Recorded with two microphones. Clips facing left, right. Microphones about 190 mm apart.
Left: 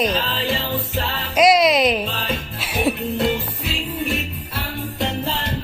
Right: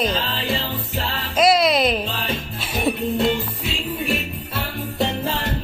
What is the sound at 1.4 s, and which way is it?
Music, 10° left (ahead or behind).